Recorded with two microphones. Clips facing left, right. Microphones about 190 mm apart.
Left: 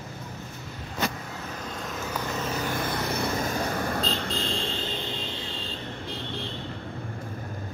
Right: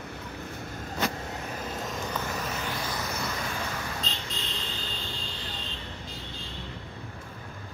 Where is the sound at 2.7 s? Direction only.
55° left (ahead or behind).